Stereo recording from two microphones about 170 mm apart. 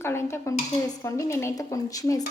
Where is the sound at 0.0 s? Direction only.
15° left (ahead or behind).